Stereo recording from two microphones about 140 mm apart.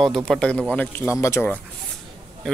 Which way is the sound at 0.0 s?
Centre (ahead or behind).